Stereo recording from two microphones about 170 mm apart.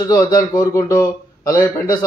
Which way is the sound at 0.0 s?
20° left (ahead or behind).